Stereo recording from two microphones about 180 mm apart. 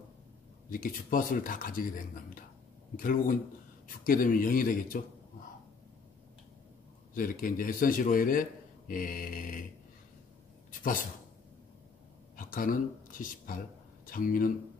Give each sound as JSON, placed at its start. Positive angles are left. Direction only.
{"t": 0.7, "sound": "speech", "side_deg": 50}
{"t": 7.2, "sound": "speech", "side_deg": 50}
{"t": 10.8, "sound": "speech", "side_deg": 50}
{"t": 12.4, "sound": "a sound", "side_deg": 50}
{"t": 14.0, "sound": "speech", "side_deg": 50}